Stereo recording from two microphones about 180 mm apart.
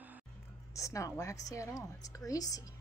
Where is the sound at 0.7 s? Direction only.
15° left (ahead or behind).